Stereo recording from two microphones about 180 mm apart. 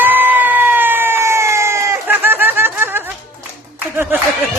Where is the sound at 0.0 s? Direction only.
10° right (ahead or behind).